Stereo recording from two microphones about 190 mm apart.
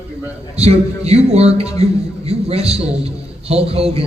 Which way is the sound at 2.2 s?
30° right (ahead or behind).